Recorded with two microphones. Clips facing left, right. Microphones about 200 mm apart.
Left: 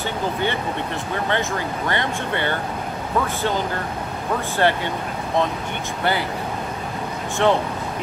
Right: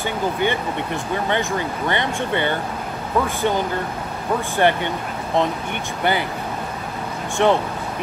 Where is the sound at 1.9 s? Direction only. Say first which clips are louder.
Right 2 dB; 20° right (ahead or behind).